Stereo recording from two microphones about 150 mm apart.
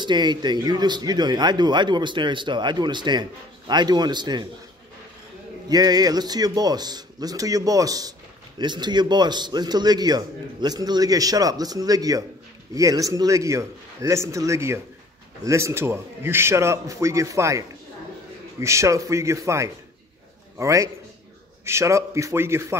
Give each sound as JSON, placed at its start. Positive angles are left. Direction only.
{"t": 0.0, "sound": "speech", "side_deg": -30}
{"t": 5.7, "sound": "a man's voice", "side_deg": -25}